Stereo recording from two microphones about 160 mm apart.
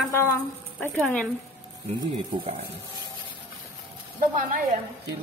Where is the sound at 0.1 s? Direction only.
15° left (ahead or behind).